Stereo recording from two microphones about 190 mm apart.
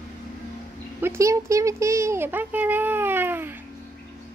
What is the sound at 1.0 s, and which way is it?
Speech, 15° right (ahead or behind).